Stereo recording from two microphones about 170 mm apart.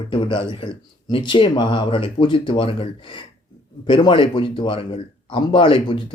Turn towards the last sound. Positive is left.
turn(degrees=30)  # may be behind; listen again after turning